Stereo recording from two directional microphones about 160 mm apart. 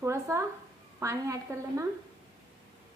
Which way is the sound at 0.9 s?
20° right (ahead or behind).